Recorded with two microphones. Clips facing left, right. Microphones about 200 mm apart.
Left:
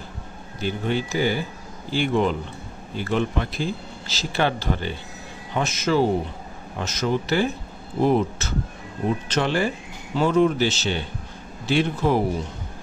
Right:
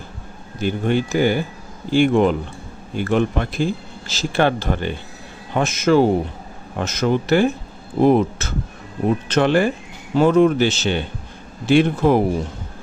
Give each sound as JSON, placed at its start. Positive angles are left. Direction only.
{"t": 0.6, "sound": "speech", "side_deg": -55}